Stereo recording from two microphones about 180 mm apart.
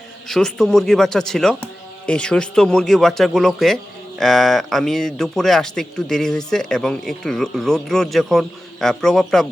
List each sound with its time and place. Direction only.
0.3 s a man's voice: 5° left (ahead or behind)